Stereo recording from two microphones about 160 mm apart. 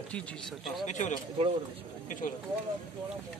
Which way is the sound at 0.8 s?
50° left (ahead or behind).